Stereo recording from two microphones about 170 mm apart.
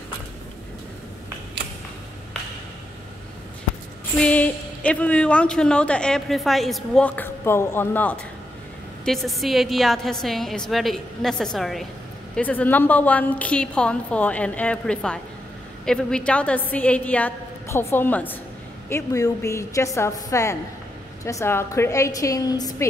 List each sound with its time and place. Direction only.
4.2 s a woman's voice: 10° left (ahead or behind)